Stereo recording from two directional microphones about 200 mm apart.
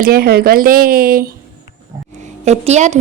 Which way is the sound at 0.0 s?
50° right (ahead or behind).